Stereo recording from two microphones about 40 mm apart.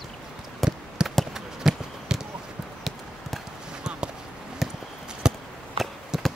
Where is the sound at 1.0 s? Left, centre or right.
Right.